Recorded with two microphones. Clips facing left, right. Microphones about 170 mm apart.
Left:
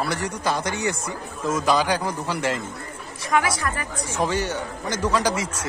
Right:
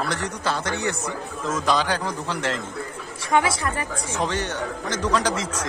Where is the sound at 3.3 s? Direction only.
25° right (ahead or behind).